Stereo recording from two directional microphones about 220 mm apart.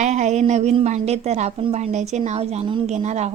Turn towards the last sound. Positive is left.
turn(degrees=-30)  # may be behind; listen again after turning